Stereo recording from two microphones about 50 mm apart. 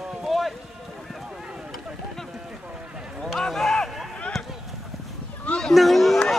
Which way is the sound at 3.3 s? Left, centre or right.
Centre.